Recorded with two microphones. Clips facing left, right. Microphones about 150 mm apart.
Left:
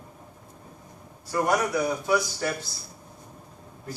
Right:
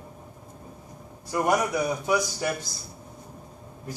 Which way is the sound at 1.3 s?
15° right (ahead or behind).